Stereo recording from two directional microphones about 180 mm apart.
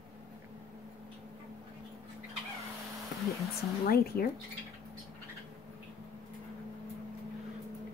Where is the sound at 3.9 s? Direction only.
55° left (ahead or behind).